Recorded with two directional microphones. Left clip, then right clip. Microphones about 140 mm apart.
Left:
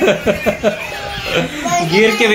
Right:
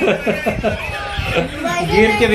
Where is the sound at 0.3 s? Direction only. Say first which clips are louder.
Left 3 dB; 60° left (ahead or behind).